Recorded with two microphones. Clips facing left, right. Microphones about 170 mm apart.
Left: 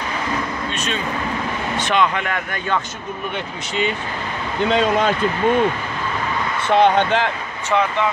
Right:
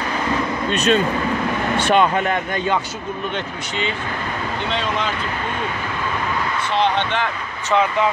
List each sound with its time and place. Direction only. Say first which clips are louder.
0.7 s speech: right 10 dB; 40° right (ahead or behind)
4.6 s speech: left 8 dB; 45° left (ahead or behind)
6.7 s speech: left 6 dB; 55° left (ahead or behind)